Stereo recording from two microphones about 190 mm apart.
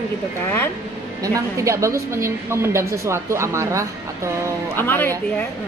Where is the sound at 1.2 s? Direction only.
15° right (ahead or behind).